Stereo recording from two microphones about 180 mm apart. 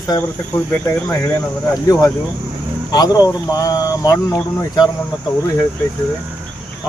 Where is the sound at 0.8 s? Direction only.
10° left (ahead or behind).